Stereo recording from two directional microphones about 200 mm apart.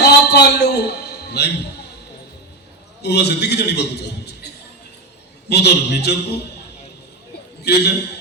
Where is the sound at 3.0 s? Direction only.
55° left (ahead or behind).